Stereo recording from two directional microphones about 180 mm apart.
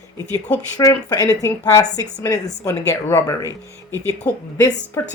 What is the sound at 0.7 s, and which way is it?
A woman's voice, 20° left (ahead or behind).